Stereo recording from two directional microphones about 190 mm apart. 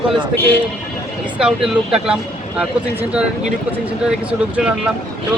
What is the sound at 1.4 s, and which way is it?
Speech, 5° right (ahead or behind).